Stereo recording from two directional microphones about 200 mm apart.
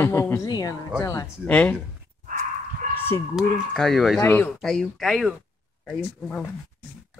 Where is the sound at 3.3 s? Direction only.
Centre (ahead or behind).